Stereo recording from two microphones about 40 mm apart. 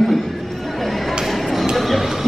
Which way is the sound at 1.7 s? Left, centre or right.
Centre.